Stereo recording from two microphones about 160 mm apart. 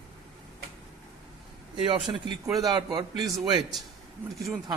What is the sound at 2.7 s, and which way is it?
Speech, 25° right (ahead or behind).